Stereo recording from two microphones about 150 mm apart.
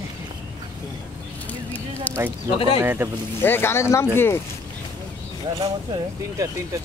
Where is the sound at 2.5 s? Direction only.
35° left (ahead or behind).